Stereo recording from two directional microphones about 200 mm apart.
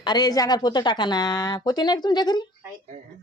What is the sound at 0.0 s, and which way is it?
Speech, 20° left (ahead or behind).